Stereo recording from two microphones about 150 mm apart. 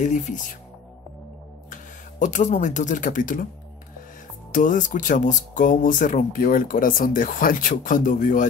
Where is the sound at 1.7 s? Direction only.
60° left (ahead or behind).